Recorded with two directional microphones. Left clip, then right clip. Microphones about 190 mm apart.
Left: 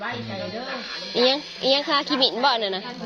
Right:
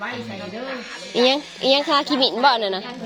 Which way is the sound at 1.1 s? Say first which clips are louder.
Right 3 dB; 25° right (ahead or behind).